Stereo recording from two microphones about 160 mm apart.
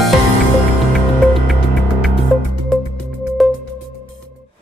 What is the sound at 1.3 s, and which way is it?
Music, centre (ahead or behind).